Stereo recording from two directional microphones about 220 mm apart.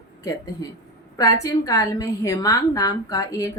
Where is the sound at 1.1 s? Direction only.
15° left (ahead or behind).